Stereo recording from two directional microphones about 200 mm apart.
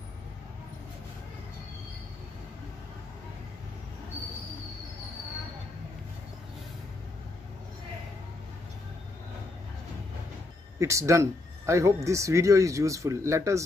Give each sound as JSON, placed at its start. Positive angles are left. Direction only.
{"t": 10.8, "sound": "speech", "side_deg": -15}